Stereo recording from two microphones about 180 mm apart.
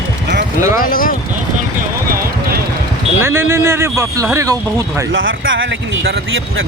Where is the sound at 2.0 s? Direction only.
55° right (ahead or behind).